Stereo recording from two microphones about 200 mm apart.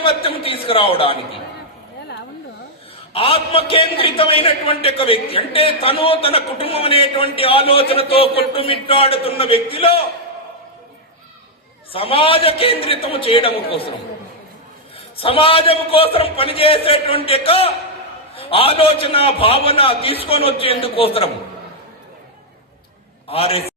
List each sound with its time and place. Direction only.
0.0 s a sound: 25° left (ahead or behind)
3.1 s a man's voice: 30° left (ahead or behind)
11.9 s a man's voice: 25° left (ahead or behind)
15.1 s a man's voice: 25° left (ahead or behind)
23.3 s a man's voice: 30° left (ahead or behind)